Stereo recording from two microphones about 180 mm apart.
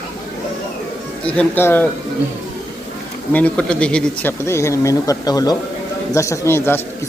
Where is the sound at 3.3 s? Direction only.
5° left (ahead or behind).